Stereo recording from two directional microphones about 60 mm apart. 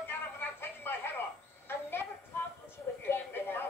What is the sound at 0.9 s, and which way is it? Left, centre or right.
Cricket, left.